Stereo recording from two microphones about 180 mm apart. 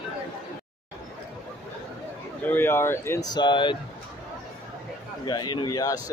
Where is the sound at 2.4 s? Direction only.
10° left (ahead or behind).